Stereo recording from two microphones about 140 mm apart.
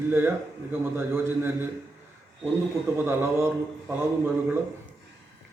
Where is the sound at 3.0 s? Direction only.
15° right (ahead or behind).